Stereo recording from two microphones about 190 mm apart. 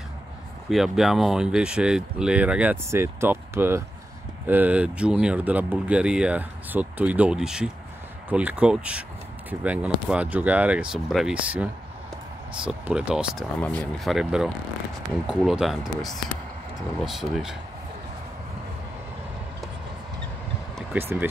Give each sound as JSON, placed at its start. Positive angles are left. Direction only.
{"t": 0.7, "sound": "speech", "side_deg": 0}
{"t": 13.6, "sound": "speech", "side_deg": 5}
{"t": 20.9, "sound": "speech", "side_deg": -10}